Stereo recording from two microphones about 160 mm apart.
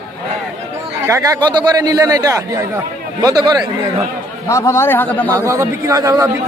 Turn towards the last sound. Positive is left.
turn(degrees=-20)  # may be behind; listen again after turning